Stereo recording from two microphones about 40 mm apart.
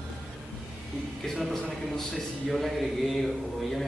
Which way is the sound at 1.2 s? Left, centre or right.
Centre.